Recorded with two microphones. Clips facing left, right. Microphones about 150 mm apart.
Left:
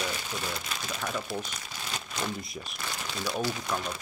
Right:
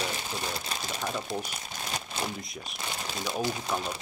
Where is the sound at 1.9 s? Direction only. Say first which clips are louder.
Right 1 dB; 25° right (ahead or behind).